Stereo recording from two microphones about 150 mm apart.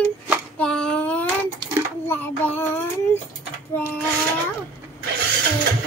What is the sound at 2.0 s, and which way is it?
Child singing, 15° left (ahead or behind).